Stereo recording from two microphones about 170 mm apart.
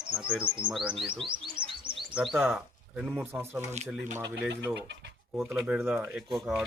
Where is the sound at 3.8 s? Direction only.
40° right (ahead or behind).